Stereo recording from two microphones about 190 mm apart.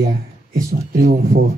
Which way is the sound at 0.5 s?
50° right (ahead or behind).